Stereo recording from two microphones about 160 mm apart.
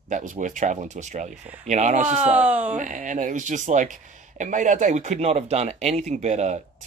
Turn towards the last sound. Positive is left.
turn(degrees=-45)  # may be behind; listen again after turning